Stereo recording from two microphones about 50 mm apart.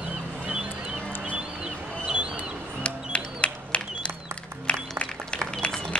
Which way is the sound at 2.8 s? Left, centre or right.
Left.